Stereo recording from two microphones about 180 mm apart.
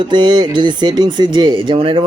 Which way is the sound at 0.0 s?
25° right (ahead or behind).